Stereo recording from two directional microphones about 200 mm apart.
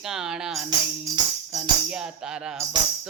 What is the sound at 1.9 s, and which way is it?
Music, 5° right (ahead or behind).